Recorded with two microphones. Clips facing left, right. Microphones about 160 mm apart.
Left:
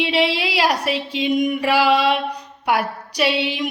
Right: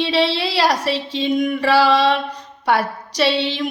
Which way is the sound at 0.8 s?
35° right (ahead or behind).